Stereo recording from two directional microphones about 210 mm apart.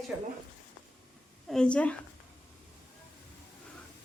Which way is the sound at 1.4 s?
5° left (ahead or behind).